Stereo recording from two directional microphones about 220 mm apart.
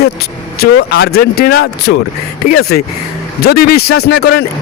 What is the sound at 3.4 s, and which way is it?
Speech, 45° left (ahead or behind).